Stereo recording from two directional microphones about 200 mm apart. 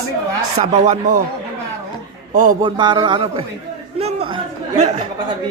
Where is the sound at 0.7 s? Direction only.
35° right (ahead or behind).